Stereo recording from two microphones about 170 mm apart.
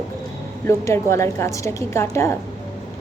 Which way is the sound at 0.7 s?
15° left (ahead or behind).